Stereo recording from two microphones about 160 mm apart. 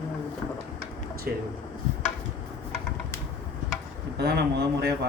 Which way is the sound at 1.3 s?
90° right.